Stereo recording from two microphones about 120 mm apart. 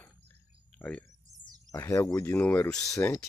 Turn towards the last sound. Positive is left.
turn(degrees=20)  # may be behind; listen again after turning